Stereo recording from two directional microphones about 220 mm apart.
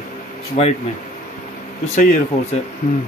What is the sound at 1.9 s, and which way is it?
Speech, 35° left (ahead or behind).